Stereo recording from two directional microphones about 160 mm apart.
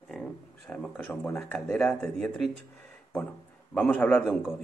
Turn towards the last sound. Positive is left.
turn(degrees=-5)  # may be behind; listen again after turning